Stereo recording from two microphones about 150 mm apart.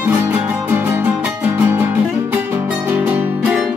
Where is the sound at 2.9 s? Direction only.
10° right (ahead or behind).